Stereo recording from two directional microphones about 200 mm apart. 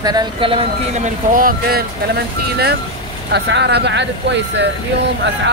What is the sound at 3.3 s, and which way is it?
Speech, 60° right (ahead or behind).